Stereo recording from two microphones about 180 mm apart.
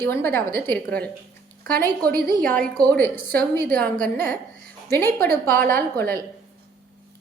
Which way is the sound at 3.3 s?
10° left (ahead or behind).